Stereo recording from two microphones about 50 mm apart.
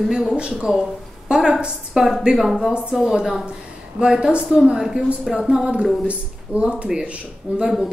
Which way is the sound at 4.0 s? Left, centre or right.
Right.